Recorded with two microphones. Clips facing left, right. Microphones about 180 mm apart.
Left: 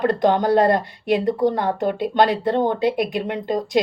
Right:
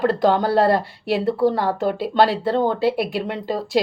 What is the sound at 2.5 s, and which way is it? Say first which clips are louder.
Speech: even; 15° left (ahead or behind).